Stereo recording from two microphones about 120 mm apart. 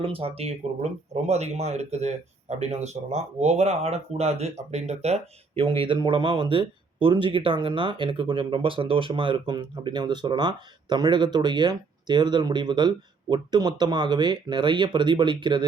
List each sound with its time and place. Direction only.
0.0 s speech: 50° right (ahead or behind)
5.6 s speech: 45° right (ahead or behind)